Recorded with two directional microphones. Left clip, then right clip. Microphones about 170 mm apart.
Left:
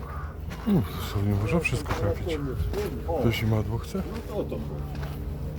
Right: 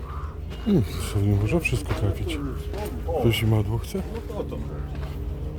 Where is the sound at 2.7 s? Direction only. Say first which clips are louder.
Left 3 dB; 75° left (ahead or behind).